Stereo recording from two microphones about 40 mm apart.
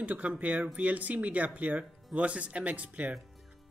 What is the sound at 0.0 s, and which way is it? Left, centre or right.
Speech, right.